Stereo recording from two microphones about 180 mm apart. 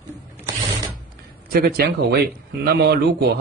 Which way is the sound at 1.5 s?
60° right (ahead or behind).